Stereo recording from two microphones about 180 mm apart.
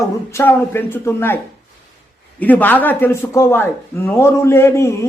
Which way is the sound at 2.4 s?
10° left (ahead or behind).